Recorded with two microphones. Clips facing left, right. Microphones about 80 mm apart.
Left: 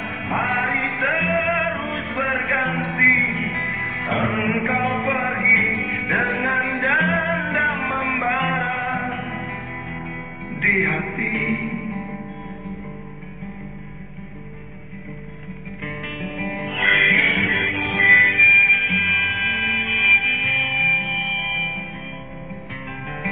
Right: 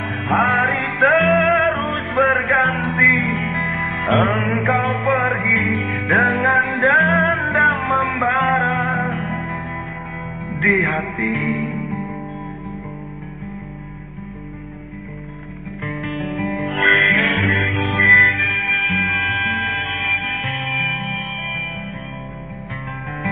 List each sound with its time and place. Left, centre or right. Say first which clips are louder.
0.1 s music: right 6 dB; right
4.1 s music: right 5 dB; right
4.5 s music: right 3 dB; right
11.9 s music: right 3 dB; centre
15.8 s music: right 6 dB; right